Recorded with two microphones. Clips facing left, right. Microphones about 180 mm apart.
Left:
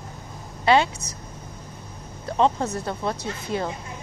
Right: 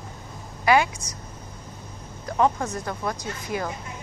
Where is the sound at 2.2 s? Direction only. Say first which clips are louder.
Left 1 dB; 25° left (ahead or behind).